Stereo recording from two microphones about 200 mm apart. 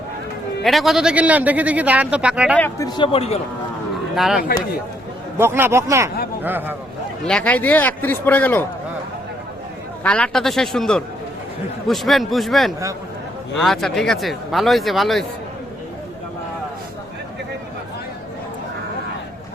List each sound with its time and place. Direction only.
0.6 s a man's voice: centre (ahead or behind)
2.6 s speech: 15° left (ahead or behind); by 3.4 s 30° left (ahead or behind)
4.1 s a man's voice: centre (ahead or behind)
7.3 s a man's voice: 5° left (ahead or behind)
10.0 s a man's voice: 5° left (ahead or behind)